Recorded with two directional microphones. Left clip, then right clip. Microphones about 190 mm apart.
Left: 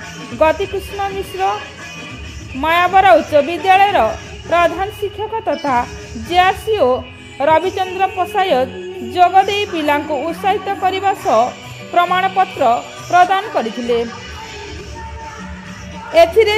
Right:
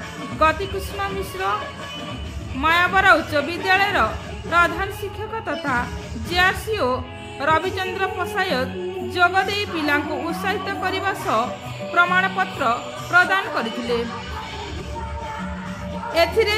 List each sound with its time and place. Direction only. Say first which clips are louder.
0.4 s a woman's voice: left 5 dB; 25° left (ahead or behind)
2.6 s a woman's voice: left 5 dB; 30° left (ahead or behind)
16.1 s speech: left 8 dB; 35° left (ahead or behind)